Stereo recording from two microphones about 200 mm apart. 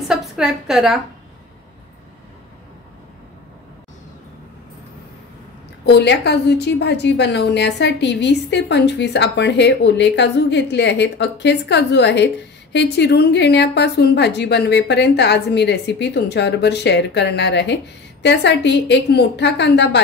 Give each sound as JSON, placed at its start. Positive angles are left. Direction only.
{"t": 0.1, "sound": "a woman's voice", "side_deg": 0}
{"t": 5.9, "sound": "a woman's voice", "side_deg": 55}